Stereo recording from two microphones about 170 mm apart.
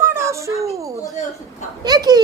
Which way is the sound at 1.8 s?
25° right (ahead or behind).